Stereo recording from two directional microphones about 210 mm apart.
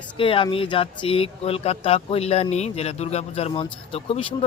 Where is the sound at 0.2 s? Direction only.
25° left (ahead or behind).